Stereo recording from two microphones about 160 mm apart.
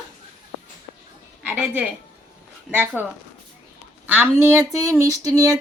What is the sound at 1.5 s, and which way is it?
A woman's voice, 10° right (ahead or behind).